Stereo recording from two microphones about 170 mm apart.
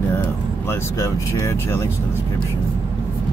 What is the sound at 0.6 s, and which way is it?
Speech, 15° left (ahead or behind).